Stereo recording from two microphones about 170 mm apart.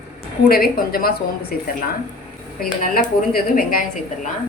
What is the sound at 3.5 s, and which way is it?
Speech, 55° left (ahead or behind).